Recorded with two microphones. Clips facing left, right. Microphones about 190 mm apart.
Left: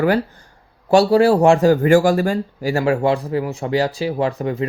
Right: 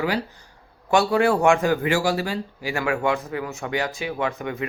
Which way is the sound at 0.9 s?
35° left (ahead or behind).